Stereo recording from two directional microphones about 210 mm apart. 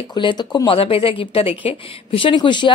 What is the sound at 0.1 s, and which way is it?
Speech, 20° left (ahead or behind).